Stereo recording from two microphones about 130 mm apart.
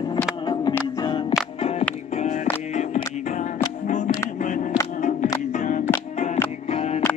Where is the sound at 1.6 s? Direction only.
50° left (ahead or behind); by 5.9 s 70° left (ahead or behind).